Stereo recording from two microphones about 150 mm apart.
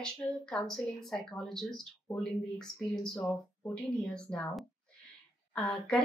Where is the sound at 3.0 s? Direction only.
5° left (ahead or behind).